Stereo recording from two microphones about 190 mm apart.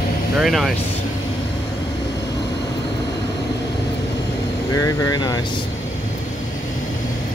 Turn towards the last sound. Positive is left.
turn(degrees=20)  # may be behind; listen again after turning